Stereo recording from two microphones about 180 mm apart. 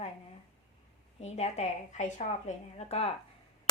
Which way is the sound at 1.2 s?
35° left (ahead or behind).